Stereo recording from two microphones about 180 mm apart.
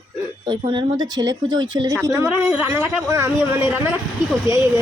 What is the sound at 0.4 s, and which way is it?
Speech, 25° right (ahead or behind).